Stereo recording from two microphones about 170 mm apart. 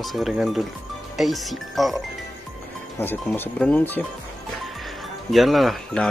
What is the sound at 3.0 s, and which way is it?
Speech, 10° left (ahead or behind).